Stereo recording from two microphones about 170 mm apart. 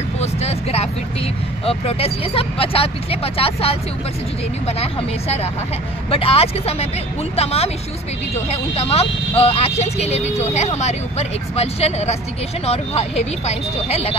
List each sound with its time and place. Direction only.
0.2 s vehicle: 40° left (ahead or behind)
1.7 s speech: 35° left (ahead or behind)
6.0 s speech: 35° left (ahead or behind)